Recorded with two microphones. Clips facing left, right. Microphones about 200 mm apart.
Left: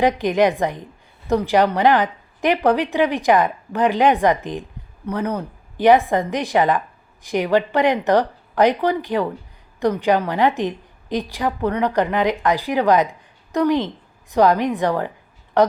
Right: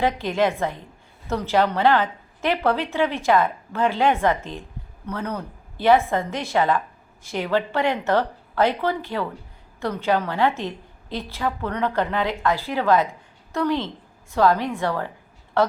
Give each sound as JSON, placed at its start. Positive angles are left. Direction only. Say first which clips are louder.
{"t": 0.0, "sound": "a woman's voice", "louder": "left 5 dB", "side_deg": 15}